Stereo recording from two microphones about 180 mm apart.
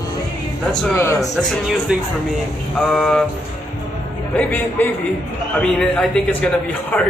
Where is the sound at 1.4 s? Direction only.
Centre (ahead or behind).